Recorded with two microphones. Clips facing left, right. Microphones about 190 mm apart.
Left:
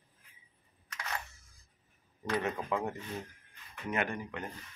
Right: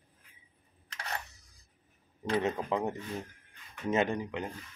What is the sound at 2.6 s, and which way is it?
Speech, 20° right (ahead or behind).